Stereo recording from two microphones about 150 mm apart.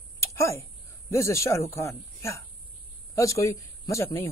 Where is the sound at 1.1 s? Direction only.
20° left (ahead or behind).